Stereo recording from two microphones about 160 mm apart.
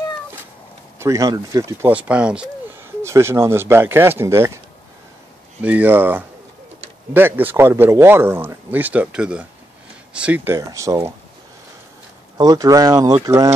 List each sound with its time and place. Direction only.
0.9 s speech: 20° right (ahead or behind)
5.6 s speech: 10° right (ahead or behind)
12.4 s speech: 25° right (ahead or behind)